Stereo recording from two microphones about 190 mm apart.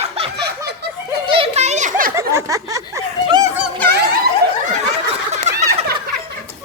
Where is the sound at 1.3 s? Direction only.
30° right (ahead or behind).